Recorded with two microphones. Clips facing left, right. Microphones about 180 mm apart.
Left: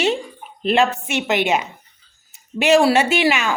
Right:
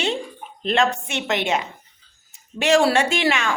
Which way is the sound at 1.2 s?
15° left (ahead or behind).